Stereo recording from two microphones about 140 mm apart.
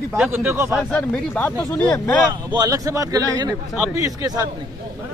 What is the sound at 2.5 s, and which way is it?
A man's voice, 25° right (ahead or behind).